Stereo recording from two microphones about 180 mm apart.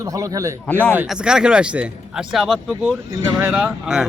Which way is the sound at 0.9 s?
10° right (ahead or behind).